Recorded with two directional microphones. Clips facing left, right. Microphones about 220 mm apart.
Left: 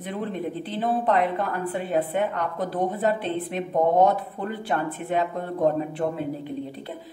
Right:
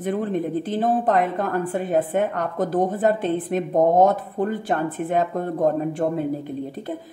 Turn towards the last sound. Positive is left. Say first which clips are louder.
# right 5 dB
turn(degrees=-45)  # may be behind; listen again after turning